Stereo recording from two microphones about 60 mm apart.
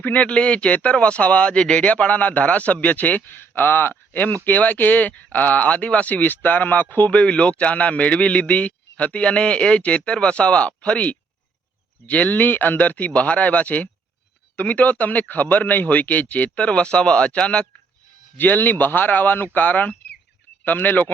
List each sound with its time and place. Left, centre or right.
0.0 s speech: left
18.3 s speech: left